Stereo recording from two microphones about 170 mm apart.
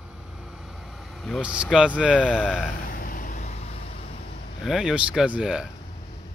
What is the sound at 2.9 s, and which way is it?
Vehicle, 55° left (ahead or behind).